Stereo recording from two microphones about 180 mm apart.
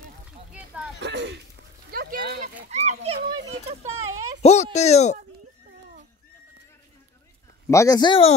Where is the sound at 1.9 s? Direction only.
55° right (ahead or behind); by 3.2 s 35° right (ahead or behind).